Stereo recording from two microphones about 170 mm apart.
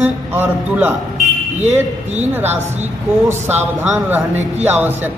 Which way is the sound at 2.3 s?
10° right (ahead or behind).